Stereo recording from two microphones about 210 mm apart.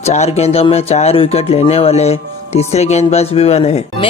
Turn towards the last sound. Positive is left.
turn(degrees=30)  # may be behind; listen again after turning